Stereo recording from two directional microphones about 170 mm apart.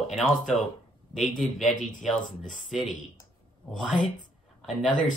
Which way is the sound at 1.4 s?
Centre (ahead or behind).